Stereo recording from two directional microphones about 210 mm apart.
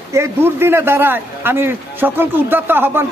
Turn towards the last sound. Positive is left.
turn(degrees=-10)  # may be behind; listen again after turning